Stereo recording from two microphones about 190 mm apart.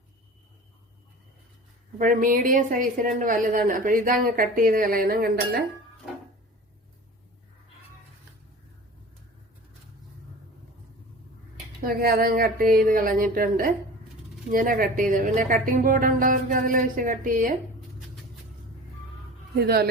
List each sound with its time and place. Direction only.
2.0 s a woman's voice: 45° right (ahead or behind)
11.8 s a woman's voice: 50° right (ahead or behind)
19.5 s speech: 55° right (ahead or behind)